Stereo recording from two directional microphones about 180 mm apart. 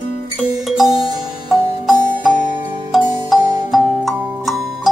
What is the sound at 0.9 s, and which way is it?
Music, 20° right (ahead or behind).